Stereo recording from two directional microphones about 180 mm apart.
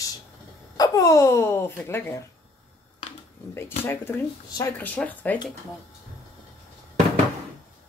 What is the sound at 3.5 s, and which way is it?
Speech, 15° left (ahead or behind).